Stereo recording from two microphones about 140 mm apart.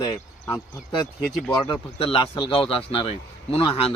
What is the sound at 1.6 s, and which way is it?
A man's voice, 35° left (ahead or behind).